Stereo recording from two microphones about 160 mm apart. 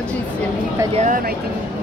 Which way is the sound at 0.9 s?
50° right (ahead or behind).